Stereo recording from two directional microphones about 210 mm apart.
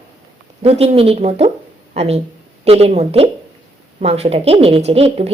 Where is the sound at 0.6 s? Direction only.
30° right (ahead or behind).